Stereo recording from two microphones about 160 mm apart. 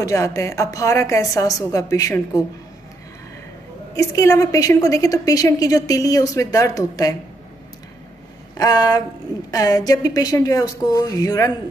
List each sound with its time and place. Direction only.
0.0 s a woman's voice: 20° left (ahead or behind)
3.9 s a woman's voice: 20° left (ahead or behind)
8.5 s a woman's voice: 25° left (ahead or behind)